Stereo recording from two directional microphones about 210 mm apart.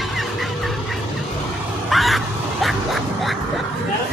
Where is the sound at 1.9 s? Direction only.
Centre (ahead or behind).